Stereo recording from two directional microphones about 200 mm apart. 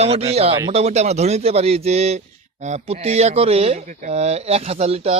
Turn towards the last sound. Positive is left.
turn(degrees=-30)  # may be behind; listen again after turning